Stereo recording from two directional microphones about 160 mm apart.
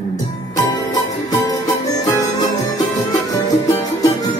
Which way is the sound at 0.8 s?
25° left (ahead or behind).